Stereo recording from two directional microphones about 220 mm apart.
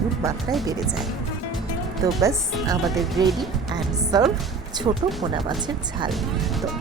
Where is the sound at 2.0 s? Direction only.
15° right (ahead or behind).